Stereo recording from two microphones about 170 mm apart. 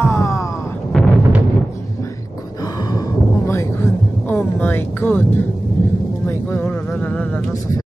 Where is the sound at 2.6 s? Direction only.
25° left (ahead or behind).